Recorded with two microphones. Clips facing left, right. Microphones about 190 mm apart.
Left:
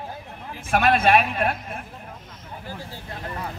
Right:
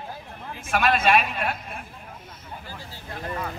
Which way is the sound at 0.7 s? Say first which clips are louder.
Left 3 dB; 55° left (ahead or behind).